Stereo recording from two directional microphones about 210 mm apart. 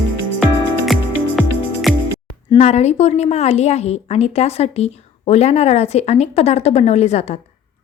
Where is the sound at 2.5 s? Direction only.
30° left (ahead or behind).